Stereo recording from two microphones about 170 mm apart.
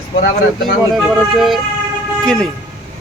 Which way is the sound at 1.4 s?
Centre (ahead or behind).